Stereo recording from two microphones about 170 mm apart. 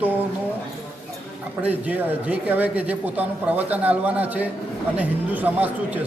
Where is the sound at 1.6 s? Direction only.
10° right (ahead or behind).